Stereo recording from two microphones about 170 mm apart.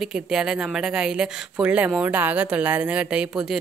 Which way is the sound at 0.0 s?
5° right (ahead or behind).